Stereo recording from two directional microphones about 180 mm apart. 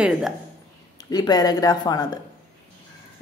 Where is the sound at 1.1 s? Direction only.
20° left (ahead or behind).